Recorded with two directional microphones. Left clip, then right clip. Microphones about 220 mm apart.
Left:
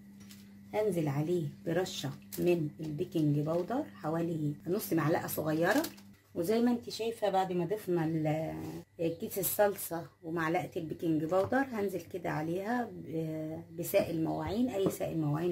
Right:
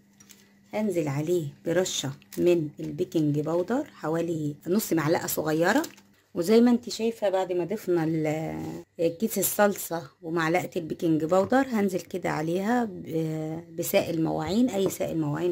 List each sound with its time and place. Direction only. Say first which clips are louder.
0.7 s speech: right 4 dB; 55° right (ahead or behind)
9.6 s speech: right 5 dB; 50° right (ahead or behind)